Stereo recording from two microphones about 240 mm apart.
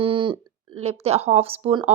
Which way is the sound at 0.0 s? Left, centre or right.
Right.